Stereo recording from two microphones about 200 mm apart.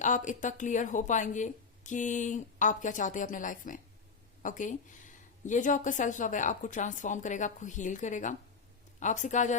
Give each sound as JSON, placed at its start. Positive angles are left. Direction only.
{"t": 0.0, "sound": "a woman's voice", "side_deg": 40}